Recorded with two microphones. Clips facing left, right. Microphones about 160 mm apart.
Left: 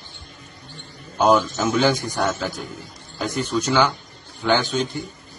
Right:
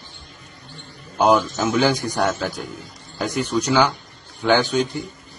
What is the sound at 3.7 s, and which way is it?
Speech, 10° right (ahead or behind).